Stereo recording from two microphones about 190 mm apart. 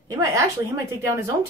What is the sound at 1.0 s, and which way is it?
Speech, 15° right (ahead or behind).